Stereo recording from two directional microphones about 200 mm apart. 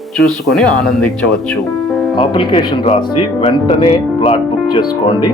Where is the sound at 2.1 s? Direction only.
25° left (ahead or behind).